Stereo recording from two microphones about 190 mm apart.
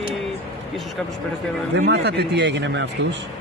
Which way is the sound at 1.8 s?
65° right (ahead or behind).